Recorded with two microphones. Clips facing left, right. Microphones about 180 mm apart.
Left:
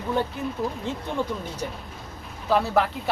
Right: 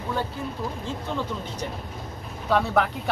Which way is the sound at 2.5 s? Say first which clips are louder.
Left 1 dB; centre (ahead or behind).